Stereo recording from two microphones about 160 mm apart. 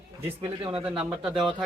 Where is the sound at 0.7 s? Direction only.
5° right (ahead or behind).